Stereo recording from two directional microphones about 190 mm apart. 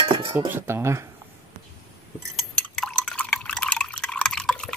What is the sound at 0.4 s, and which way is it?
Speech, 10° right (ahead or behind).